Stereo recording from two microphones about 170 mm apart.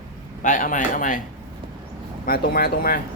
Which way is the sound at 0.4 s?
50° left (ahead or behind).